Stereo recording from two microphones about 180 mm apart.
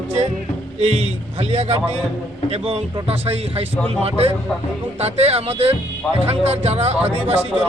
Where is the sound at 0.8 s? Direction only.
35° right (ahead or behind).